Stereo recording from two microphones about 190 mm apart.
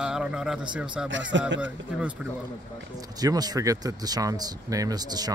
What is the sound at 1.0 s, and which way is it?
Speech, 75° right (ahead or behind).